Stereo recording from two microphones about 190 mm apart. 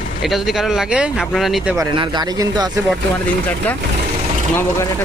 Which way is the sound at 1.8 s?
25° right (ahead or behind).